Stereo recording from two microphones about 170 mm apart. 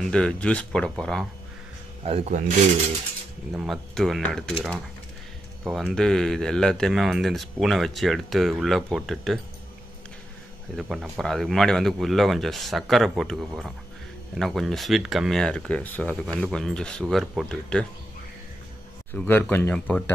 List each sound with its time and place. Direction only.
0.0 s speech: 5° left (ahead or behind)
2.0 s speech: 40° right (ahead or behind)
3.5 s speech: centre (ahead or behind)
10.8 s speech: centre (ahead or behind)
19.1 s speech: 10° left (ahead or behind)